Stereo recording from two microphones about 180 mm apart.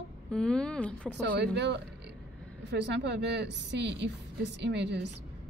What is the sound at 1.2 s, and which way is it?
A woman's voice, 75° right (ahead or behind).